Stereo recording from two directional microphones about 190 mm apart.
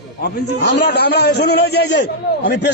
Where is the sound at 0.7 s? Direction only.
60° left (ahead or behind).